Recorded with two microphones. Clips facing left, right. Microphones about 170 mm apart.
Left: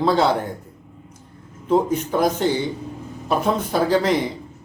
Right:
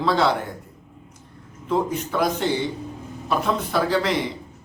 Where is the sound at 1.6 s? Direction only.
35° left (ahead or behind).